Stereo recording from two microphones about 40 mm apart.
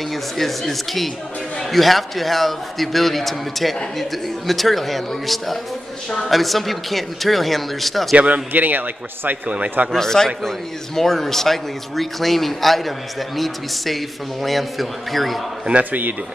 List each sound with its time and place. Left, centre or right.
0.1 s a man's voice: centre
8.2 s a man's voice: right
9.9 s a man's voice: centre
15.8 s a man's voice: right